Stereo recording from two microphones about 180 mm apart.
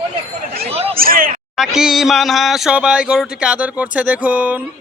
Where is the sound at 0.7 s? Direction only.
35° right (ahead or behind).